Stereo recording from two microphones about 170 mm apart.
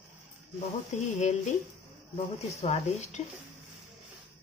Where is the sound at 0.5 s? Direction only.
40° left (ahead or behind).